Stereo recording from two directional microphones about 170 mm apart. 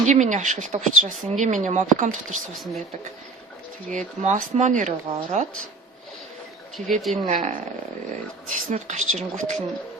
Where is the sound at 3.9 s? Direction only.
45° right (ahead or behind).